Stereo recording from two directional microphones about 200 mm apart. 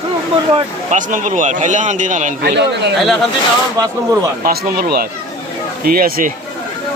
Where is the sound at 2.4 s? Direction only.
60° right (ahead or behind).